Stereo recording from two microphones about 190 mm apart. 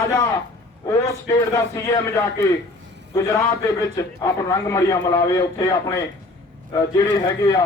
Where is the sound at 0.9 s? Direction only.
15° left (ahead or behind).